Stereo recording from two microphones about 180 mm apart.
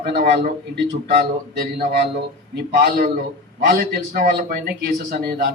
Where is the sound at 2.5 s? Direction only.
60° right (ahead or behind).